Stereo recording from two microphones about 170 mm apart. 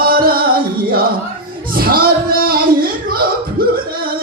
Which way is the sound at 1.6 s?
60° right (ahead or behind).